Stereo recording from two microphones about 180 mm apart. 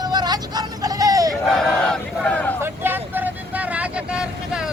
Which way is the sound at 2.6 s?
10° right (ahead or behind).